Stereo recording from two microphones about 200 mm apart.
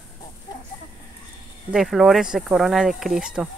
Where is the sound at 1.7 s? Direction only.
Centre (ahead or behind).